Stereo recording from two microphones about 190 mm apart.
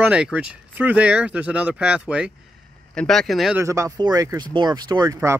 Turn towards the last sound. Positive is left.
turn(degrees=-15)  # may be behind; listen again after turning